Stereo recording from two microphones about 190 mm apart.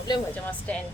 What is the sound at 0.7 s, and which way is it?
Speech, 5° left (ahead or behind).